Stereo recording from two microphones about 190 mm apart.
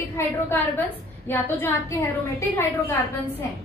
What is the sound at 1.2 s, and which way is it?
A woman's voice, 10° left (ahead or behind).